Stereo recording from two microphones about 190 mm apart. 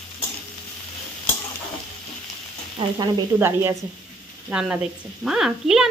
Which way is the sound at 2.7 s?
20° right (ahead or behind).